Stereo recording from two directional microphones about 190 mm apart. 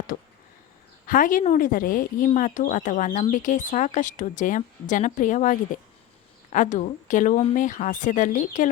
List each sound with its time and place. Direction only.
1.0 s speech: 45° left (ahead or behind)